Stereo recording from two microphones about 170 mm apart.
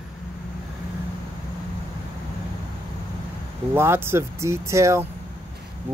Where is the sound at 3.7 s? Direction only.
15° right (ahead or behind).